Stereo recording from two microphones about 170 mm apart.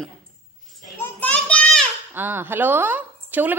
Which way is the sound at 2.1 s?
10° right (ahead or behind).